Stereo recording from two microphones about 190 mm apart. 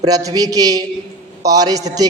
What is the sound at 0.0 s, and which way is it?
A man's voice, 20° right (ahead or behind).